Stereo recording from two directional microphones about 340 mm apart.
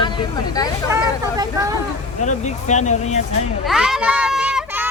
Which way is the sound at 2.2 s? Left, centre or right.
Left.